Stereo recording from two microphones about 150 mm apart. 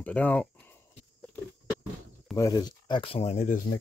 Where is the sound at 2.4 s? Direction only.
25° left (ahead or behind); by 3.4 s 40° left (ahead or behind).